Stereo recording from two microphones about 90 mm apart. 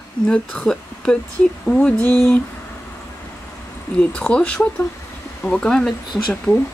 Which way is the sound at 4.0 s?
10° left (ahead or behind).